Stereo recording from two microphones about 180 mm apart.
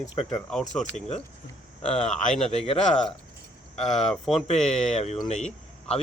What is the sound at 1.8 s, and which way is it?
Speech, 35° left (ahead or behind).